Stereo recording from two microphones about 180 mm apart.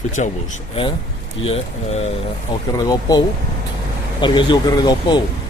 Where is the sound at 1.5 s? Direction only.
35° left (ahead or behind).